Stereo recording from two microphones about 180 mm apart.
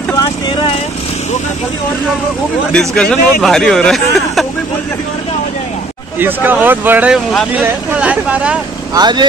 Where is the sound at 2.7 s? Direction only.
5° left (ahead or behind).